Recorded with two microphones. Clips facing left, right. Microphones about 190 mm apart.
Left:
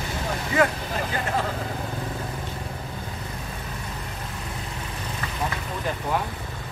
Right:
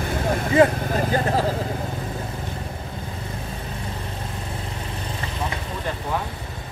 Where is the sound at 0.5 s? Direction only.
30° right (ahead or behind).